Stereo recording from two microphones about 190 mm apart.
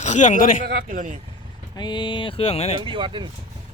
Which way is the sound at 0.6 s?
45° right (ahead or behind).